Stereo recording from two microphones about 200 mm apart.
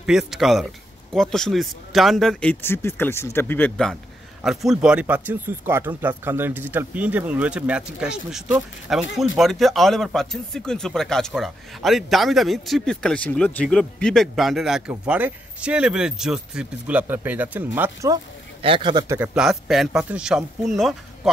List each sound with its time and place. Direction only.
0.0 s speech: 5° right (ahead or behind)
18.6 s speech: 25° right (ahead or behind)
19.1 s speech: 5° right (ahead or behind)